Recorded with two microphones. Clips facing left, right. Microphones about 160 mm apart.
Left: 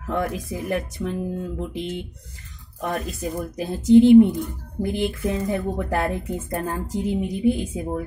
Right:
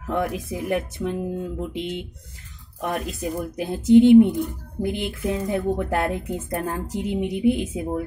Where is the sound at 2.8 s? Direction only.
10° right (ahead or behind).